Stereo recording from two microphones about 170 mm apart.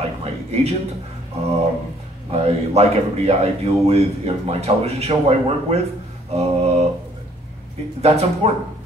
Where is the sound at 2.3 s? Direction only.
35° right (ahead or behind).